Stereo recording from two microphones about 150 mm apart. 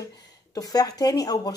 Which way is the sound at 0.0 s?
25° left (ahead or behind).